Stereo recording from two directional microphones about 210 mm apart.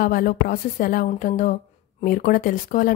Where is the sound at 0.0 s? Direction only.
45° left (ahead or behind).